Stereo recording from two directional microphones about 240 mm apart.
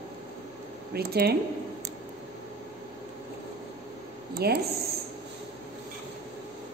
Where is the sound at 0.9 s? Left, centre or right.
Right.